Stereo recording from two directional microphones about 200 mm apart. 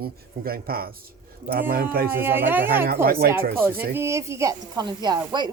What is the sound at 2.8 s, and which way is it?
Speech, 45° right (ahead or behind).